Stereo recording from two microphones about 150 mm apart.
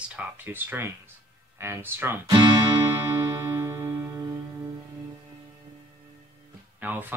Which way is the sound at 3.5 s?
20° right (ahead or behind).